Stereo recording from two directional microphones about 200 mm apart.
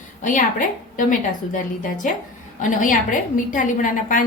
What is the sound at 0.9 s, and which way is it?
A woman's voice, 40° left (ahead or behind).